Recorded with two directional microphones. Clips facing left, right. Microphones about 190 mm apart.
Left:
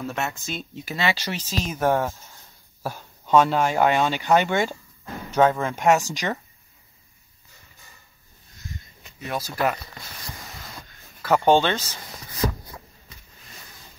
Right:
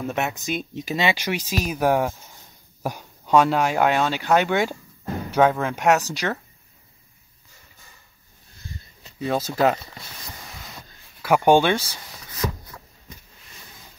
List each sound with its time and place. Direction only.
0.0 s speech: 20° right (ahead or behind)
9.2 s speech: 25° right (ahead or behind)
11.2 s speech: 15° right (ahead or behind)
12.4 s a sound: 35° left (ahead or behind)